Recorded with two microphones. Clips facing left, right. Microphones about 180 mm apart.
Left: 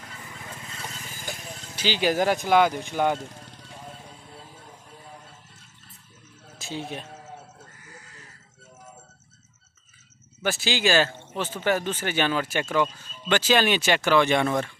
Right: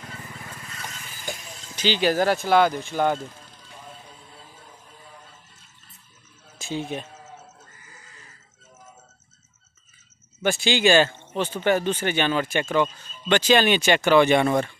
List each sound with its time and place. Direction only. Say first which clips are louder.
0.4 s vehicle: even; 25° left (ahead or behind)
1.4 s music: left 3 dB; 55° left (ahead or behind)
1.8 s speech: right 2 dB; 10° left (ahead or behind)
6.6 s speech: right 4 dB; centre (ahead or behind)
10.4 s speech: right 4 dB; 5° left (ahead or behind)